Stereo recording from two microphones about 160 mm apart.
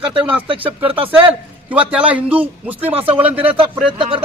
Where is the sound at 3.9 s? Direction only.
30° right (ahead or behind).